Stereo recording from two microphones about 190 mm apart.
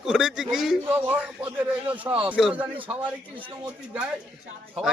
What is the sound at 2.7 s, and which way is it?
Speech, 25° right (ahead or behind).